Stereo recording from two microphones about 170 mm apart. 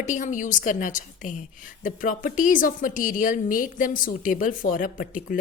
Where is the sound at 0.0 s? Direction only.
45° left (ahead or behind).